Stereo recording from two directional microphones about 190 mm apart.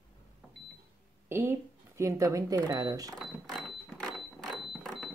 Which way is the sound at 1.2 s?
10° right (ahead or behind).